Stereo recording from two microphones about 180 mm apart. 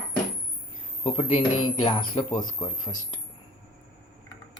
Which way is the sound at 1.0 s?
30° left (ahead or behind).